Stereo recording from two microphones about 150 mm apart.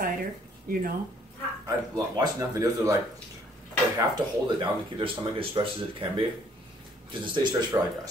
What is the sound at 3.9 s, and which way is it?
Speech, 30° right (ahead or behind).